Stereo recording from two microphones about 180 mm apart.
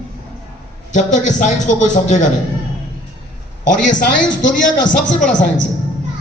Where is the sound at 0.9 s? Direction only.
45° left (ahead or behind).